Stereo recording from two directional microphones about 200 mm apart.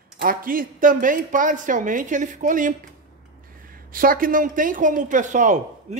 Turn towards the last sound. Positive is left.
turn(degrees=-40)  # may be behind; listen again after turning